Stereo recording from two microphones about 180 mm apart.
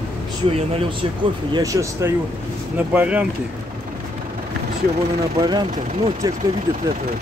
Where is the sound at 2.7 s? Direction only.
10° right (ahead or behind).